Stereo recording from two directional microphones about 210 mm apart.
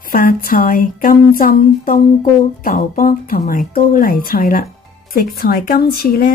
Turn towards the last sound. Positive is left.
turn(degrees=45)  # may be behind; listen again after turning